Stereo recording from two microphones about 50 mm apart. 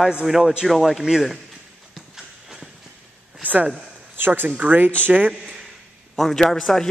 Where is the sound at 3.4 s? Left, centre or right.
Right.